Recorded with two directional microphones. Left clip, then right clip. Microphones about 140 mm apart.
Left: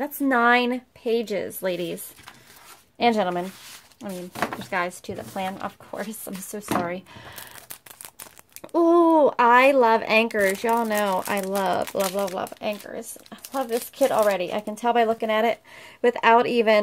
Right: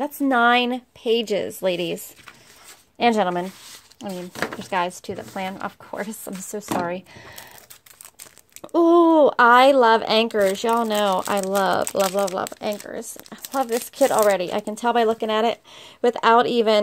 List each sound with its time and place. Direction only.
0.0 s a woman's voice: 30° right (ahead or behind)
4.6 s a woman's voice: 35° right (ahead or behind)
6.8 s a woman's voice: 20° right (ahead or behind)
8.5 s speech: 25° right (ahead or behind)